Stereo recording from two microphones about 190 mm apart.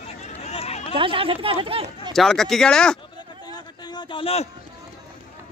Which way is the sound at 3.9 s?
25° left (ahead or behind).